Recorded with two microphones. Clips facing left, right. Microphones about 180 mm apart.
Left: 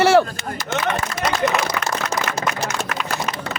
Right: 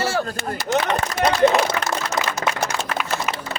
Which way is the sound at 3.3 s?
5° right (ahead or behind).